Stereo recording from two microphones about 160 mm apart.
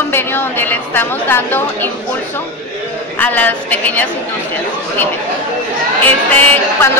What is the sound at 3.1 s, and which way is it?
Speech, 10° left (ahead or behind).